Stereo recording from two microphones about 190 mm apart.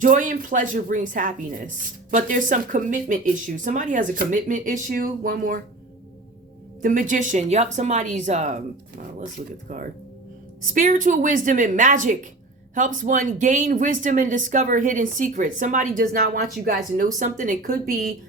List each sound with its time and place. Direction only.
0.0 s speech: 45° right (ahead or behind)
6.8 s speech: 45° right (ahead or behind)
9.7 s speech: 45° right (ahead or behind)